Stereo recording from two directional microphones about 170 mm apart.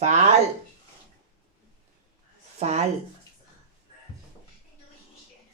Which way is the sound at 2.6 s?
40° right (ahead or behind).